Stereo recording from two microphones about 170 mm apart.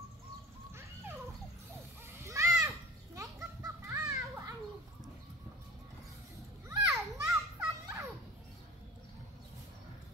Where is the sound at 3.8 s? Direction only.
15° right (ahead or behind).